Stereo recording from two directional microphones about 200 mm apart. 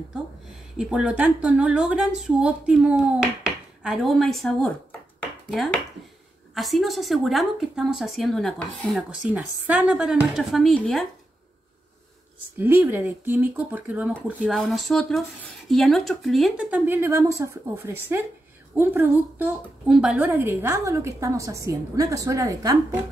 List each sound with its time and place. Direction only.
0.7 s a woman's voice: 5° right (ahead or behind)
6.5 s a woman's voice: centre (ahead or behind)
9.3 s a woman's voice: 5° right (ahead or behind)
12.5 s a woman's voice: 10° right (ahead or behind)